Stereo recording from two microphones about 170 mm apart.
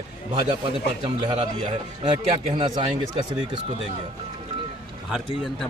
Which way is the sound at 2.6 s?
30° right (ahead or behind).